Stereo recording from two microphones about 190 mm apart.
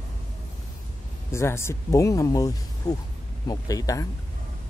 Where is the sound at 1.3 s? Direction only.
15° left (ahead or behind).